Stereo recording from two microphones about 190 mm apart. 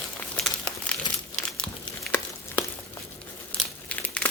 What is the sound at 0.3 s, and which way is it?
Crumpling, 5° left (ahead or behind).